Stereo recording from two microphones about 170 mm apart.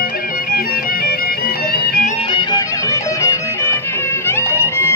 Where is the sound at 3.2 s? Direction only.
15° left (ahead or behind).